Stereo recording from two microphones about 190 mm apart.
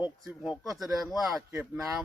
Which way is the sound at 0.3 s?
Centre (ahead or behind).